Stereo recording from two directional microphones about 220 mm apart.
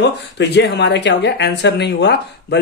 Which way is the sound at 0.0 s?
50° left (ahead or behind).